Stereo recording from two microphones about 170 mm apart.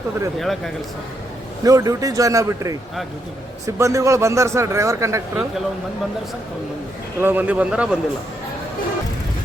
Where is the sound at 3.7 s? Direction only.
20° right (ahead or behind).